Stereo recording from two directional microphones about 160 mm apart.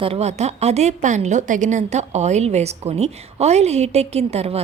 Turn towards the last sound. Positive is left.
turn(degrees=-40)  # may be behind; listen again after turning